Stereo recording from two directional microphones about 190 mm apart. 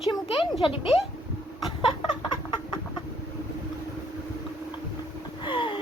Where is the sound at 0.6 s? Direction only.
25° left (ahead or behind).